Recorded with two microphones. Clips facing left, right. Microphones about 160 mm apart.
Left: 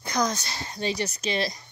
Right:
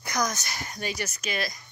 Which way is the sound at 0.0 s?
25° left (ahead or behind).